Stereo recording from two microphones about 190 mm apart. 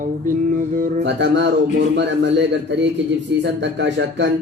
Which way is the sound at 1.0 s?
70° right (ahead or behind).